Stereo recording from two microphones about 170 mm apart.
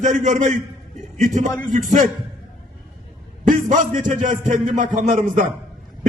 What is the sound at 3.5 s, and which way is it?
A man's voice, 50° right (ahead or behind).